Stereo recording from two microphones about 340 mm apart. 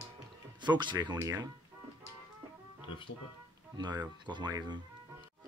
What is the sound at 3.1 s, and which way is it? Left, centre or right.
Speech, left.